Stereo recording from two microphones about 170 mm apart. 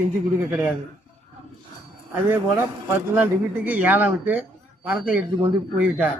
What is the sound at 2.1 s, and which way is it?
A man's voice, 10° right (ahead or behind).